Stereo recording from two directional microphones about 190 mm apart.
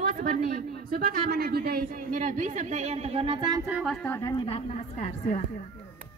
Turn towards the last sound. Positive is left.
turn(degrees=35)  # may be behind; listen again after turning